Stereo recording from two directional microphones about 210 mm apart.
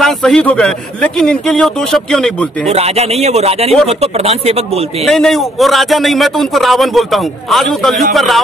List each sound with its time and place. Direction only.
0.0 s a man's voice: 5° left (ahead or behind)
2.7 s speech: 30° right (ahead or behind)
5.0 s a man's voice: centre (ahead or behind)